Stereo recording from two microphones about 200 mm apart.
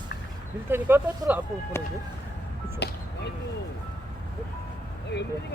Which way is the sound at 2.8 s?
55° left (ahead or behind).